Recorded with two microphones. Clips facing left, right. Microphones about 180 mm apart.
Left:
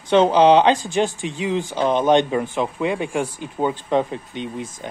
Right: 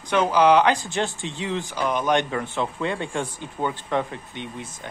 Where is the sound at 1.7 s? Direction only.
25° left (ahead or behind).